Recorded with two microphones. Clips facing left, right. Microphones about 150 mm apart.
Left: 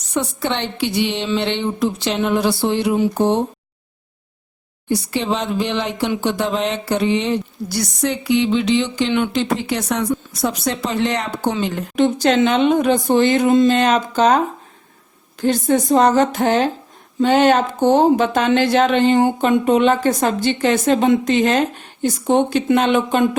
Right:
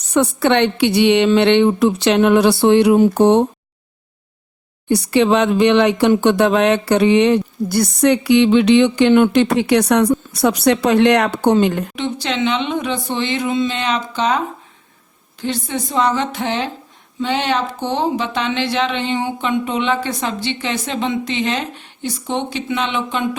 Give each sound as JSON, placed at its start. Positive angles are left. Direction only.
{"t": 0.1, "sound": "a woman's voice", "side_deg": -65}
{"t": 4.9, "sound": "a woman's voice", "side_deg": -65}
{"t": 11.6, "sound": "speech", "side_deg": -55}
{"t": 11.9, "sound": "speech", "side_deg": 45}